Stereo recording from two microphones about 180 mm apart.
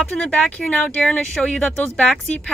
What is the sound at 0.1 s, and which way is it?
Speech, 5° left (ahead or behind).